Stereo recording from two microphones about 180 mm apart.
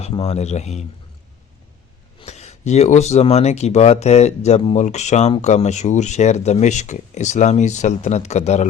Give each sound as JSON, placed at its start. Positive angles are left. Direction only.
{"t": 0.0, "sound": "speech", "side_deg": 35}
{"t": 2.1, "sound": "speech", "side_deg": 35}